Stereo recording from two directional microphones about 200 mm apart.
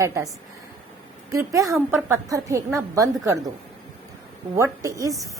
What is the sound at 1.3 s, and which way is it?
A woman's voice, 15° right (ahead or behind).